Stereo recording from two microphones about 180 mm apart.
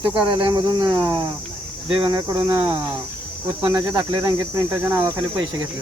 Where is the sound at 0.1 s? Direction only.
25° right (ahead or behind).